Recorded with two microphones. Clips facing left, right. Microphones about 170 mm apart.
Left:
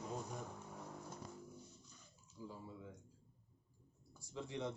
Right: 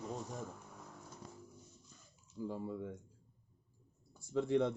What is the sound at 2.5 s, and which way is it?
Speech, 60° right (ahead or behind).